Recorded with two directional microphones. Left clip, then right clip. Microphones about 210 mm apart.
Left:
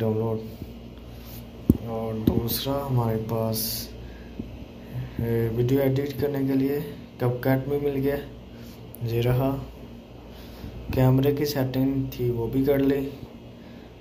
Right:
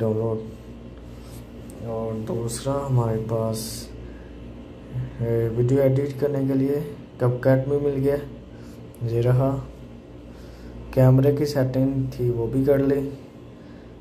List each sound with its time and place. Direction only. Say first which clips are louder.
0.0 s a man's voice: right 2 dB; 15° right (ahead or behind)
1.9 s a man's voice: even; 5° right (ahead or behind)
5.2 s speech: right 3 dB; 5° right (ahead or behind)
5.7 s a man's voice: right 5 dB; 15° right (ahead or behind)
10.9 s a man's voice: right 4 dB; 20° right (ahead or behind)